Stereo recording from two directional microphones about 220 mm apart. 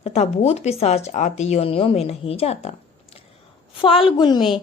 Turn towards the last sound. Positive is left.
turn(degrees=20)  # may be behind; listen again after turning